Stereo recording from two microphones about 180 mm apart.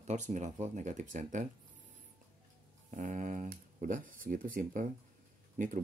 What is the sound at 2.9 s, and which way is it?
Speech, 45° right (ahead or behind).